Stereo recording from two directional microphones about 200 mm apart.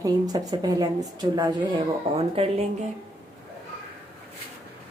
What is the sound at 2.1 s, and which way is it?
Speech, 30° right (ahead or behind).